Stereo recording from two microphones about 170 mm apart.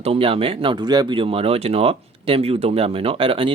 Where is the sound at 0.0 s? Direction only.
35° right (ahead or behind).